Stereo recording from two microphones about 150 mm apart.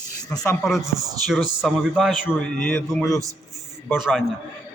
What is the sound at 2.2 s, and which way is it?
A man's voice, 10° left (ahead or behind).